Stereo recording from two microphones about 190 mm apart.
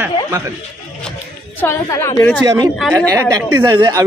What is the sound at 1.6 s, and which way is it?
Speech, 15° left (ahead or behind).